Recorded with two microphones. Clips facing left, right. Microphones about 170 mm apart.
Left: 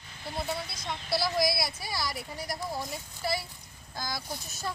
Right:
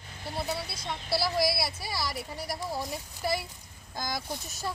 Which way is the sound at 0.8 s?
5° right (ahead or behind).